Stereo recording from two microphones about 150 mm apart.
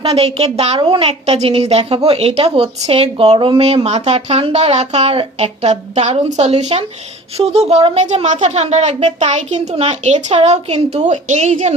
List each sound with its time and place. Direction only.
0.0 s a woman's voice: 40° right (ahead or behind)